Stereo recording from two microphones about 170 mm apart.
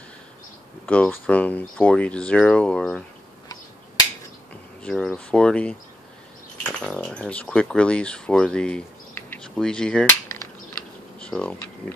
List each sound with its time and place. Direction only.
0.8 s speech: 5° left (ahead or behind)
4.8 s speech: 5° left (ahead or behind)
11.1 s speech: 5° left (ahead or behind)